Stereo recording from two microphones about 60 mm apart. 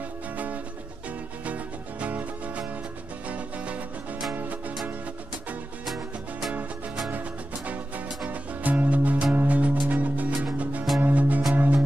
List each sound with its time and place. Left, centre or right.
1.4 s music: right
5.9 s music: centre
7.1 s music: right